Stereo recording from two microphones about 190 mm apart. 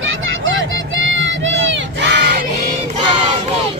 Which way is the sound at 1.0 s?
80° right.